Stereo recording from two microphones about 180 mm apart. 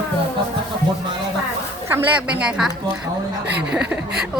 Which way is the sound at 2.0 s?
5° right (ahead or behind).